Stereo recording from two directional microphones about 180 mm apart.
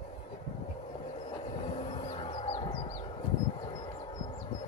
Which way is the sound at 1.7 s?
30° left (ahead or behind).